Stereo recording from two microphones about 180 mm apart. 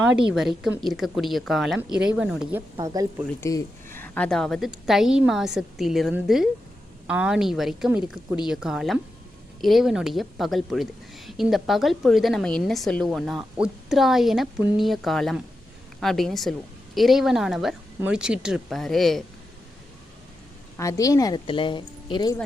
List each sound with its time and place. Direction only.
0.3 s a woman's voice: centre (ahead or behind)
2.7 s speech: 20° right (ahead or behind)
3.5 s a woman's voice: 20° left (ahead or behind); by 19.2 s centre (ahead or behind)
20.7 s speech: 20° left (ahead or behind)